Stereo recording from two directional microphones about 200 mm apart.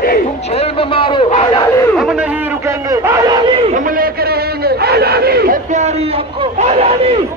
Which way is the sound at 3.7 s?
50° right (ahead or behind).